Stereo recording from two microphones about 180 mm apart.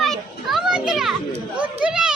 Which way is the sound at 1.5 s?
5° right (ahead or behind).